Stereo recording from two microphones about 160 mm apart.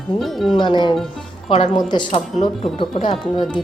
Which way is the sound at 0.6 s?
30° left (ahead or behind).